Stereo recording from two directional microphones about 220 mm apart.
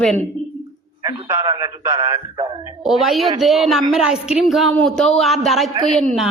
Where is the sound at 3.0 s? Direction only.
Centre (ahead or behind).